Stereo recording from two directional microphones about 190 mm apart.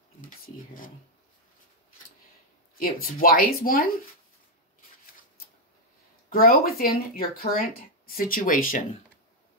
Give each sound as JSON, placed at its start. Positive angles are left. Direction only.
{"t": 2.7, "sound": "speech", "side_deg": 50}
{"t": 6.3, "sound": "speech", "side_deg": 50}